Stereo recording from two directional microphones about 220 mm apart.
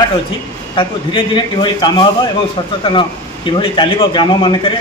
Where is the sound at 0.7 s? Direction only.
20° left (ahead or behind).